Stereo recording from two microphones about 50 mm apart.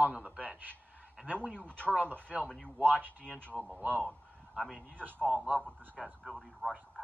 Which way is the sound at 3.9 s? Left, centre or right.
Left.